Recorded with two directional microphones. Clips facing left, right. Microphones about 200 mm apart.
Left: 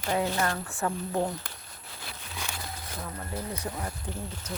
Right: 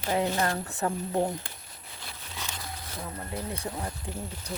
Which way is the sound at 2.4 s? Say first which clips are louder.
Left 1 dB; 10° left (ahead or behind).